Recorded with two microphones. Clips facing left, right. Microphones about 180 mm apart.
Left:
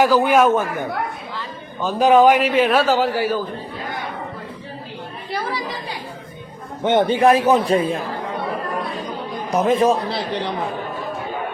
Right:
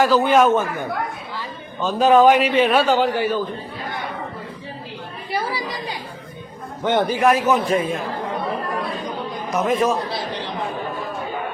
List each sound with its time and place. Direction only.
0.0 s a man's voice: 10° left (ahead or behind)
5.3 s a woman's voice: 10° right (ahead or behind)
6.8 s a man's voice: 25° left (ahead or behind)
9.5 s a man's voice: 30° left (ahead or behind)